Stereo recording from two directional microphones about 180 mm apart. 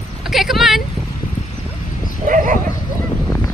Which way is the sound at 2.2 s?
45° right (ahead or behind).